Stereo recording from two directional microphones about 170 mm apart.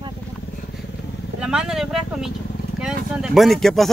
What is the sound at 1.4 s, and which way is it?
Speech, 5° right (ahead or behind).